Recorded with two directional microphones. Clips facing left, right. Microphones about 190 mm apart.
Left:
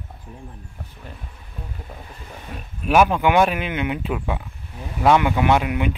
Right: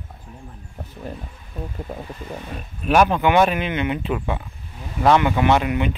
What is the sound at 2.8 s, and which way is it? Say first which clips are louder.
Speech: even; 5° left (ahead or behind).